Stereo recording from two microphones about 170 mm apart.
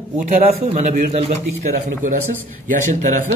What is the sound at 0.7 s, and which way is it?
Speech, 45° right (ahead or behind).